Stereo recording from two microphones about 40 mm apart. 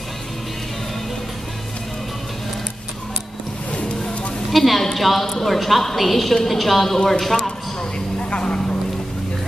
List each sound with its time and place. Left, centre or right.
4.5 s a sound: centre
4.9 s a woman's voice: centre
8.2 s vehicle: left